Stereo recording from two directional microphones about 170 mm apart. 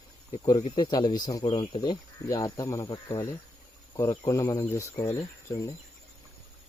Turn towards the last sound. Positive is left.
turn(degrees=15)  # may be behind; listen again after turning